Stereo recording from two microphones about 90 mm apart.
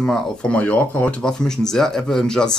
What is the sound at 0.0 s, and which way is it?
Speech, 10° left (ahead or behind).